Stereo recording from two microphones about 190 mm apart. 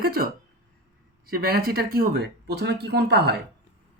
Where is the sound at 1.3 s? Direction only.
55° right (ahead or behind).